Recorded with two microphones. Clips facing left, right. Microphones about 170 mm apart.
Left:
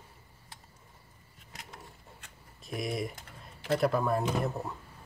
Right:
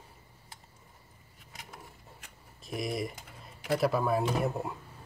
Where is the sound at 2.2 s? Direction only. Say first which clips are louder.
Right 1 dB; centre (ahead or behind).